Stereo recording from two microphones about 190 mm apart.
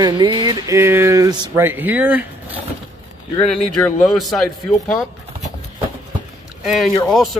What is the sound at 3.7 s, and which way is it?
Speech, centre (ahead or behind).